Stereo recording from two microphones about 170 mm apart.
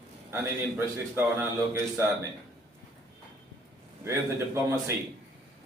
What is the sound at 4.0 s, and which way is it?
Speech, 15° right (ahead or behind).